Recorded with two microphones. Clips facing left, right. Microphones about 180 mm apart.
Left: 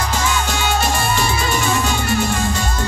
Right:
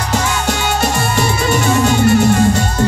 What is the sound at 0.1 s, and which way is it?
Music, 70° right (ahead or behind).